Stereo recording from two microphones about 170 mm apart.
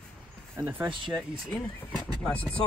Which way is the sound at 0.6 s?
10° right (ahead or behind).